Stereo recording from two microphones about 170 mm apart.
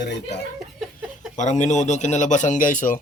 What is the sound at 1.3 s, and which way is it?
A man's voice, 45° left (ahead or behind).